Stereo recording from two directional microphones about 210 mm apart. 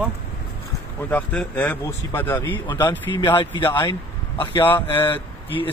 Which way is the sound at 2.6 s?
20° left (ahead or behind).